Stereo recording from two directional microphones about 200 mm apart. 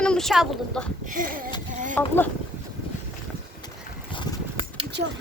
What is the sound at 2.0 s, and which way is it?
Speech, 10° left (ahead or behind).